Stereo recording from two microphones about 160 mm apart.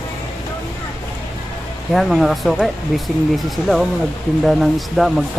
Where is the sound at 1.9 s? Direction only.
Centre (ahead or behind).